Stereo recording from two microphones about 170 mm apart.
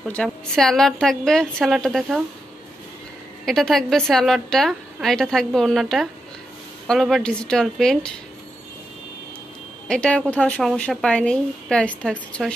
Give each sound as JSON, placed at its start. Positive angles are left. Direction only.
{"t": 0.1, "sound": "a woman's voice", "side_deg": 5}
{"t": 3.4, "sound": "a woman's voice", "side_deg": 0}
{"t": 9.8, "sound": "a woman's voice", "side_deg": 5}